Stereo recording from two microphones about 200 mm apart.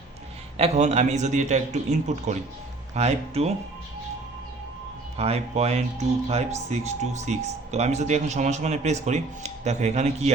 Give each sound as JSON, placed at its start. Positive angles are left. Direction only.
{"t": 0.5, "sound": "speech", "side_deg": -30}
{"t": 5.1, "sound": "speech", "side_deg": -30}